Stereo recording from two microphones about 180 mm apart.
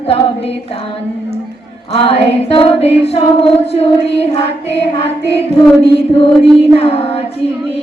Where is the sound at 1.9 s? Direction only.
35° left (ahead or behind).